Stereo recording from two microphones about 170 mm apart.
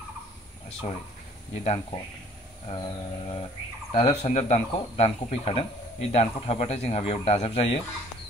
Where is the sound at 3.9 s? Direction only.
35° left (ahead or behind).